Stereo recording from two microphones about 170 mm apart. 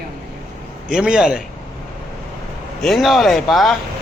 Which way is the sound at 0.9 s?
5° right (ahead or behind).